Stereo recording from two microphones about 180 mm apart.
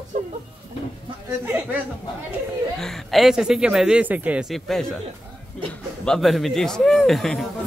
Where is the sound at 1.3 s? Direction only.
10° right (ahead or behind).